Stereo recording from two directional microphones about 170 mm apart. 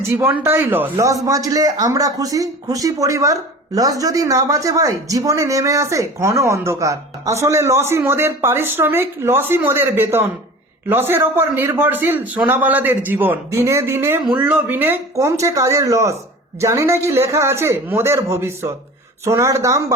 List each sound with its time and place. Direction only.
0.0 s a man's voice: 15° right (ahead or behind)